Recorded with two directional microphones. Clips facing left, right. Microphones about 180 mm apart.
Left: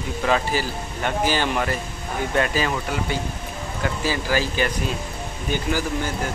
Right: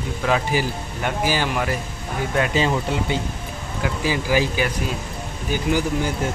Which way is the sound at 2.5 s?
25° right (ahead or behind).